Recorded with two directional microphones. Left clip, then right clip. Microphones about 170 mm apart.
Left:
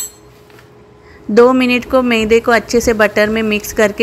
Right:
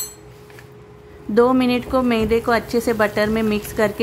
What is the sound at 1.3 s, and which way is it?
A woman's voice, 20° left (ahead or behind).